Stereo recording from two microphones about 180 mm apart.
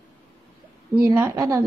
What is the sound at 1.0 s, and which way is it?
Speech, 15° right (ahead or behind).